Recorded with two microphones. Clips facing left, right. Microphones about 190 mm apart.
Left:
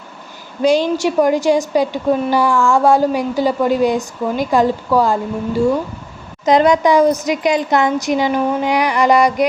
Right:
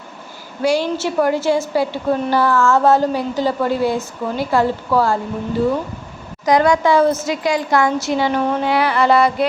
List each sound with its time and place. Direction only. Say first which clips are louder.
0.6 s a woman's voice: left 4 dB; 20° left (ahead or behind)